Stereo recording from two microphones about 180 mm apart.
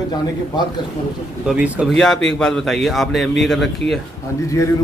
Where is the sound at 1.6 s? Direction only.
10° right (ahead or behind).